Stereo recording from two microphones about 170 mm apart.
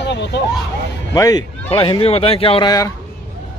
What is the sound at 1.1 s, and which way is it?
Speech, 20° left (ahead or behind).